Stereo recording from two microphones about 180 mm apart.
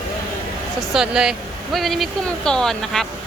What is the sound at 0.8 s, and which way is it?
Speech, 5° right (ahead or behind).